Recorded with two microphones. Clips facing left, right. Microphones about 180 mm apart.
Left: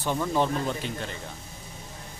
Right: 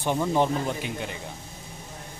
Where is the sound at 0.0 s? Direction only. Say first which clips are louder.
Right 2 dB; 15° right (ahead or behind).